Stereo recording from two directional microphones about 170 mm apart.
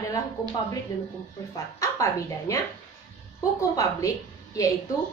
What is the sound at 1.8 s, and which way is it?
Speech, 20° left (ahead or behind).